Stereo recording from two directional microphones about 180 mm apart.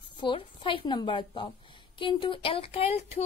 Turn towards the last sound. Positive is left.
turn(degrees=40)  # may be behind; listen again after turning